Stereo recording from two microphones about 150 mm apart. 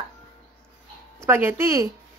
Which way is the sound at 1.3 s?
15° right (ahead or behind).